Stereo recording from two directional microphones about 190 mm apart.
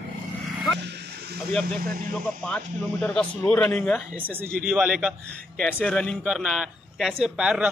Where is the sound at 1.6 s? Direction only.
50° right (ahead or behind).